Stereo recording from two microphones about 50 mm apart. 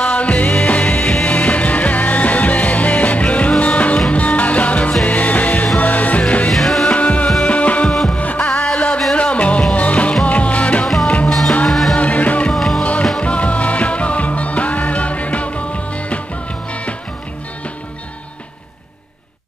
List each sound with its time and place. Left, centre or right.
0.0 s music: left
6.5 s music: centre
6.9 s music: left
8.7 s a sound: left
9.1 s music: left
11.2 s music: centre
12.0 s music: left
12.5 s music: centre
13.2 s music: left